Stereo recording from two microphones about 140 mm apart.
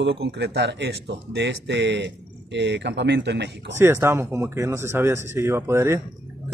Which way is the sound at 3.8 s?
20° right (ahead or behind).